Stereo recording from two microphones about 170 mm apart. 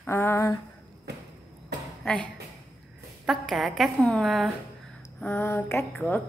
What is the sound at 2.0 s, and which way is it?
A woman's voice, 5° left (ahead or behind).